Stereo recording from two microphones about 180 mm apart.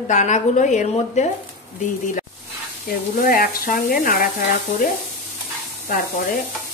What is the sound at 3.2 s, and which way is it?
A woman's voice, 55° left (ahead or behind).